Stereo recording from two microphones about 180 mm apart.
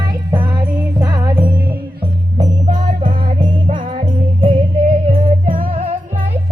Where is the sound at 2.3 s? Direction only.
40° right (ahead or behind).